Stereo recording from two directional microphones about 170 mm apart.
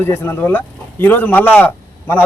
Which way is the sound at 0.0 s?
15° left (ahead or behind).